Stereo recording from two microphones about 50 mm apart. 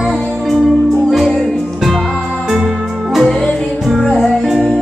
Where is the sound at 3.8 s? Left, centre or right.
Centre.